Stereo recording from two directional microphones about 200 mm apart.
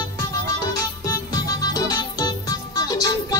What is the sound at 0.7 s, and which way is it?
Music, 20° left (ahead or behind).